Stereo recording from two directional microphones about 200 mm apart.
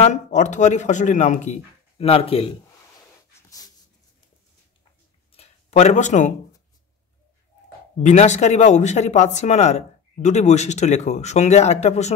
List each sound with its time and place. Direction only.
0.0 s speech: 35° left (ahead or behind)
3.4 s dog: 15° left (ahead or behind)
5.3 s a sound: 30° left (ahead or behind)
8.0 s speech: 35° left (ahead or behind)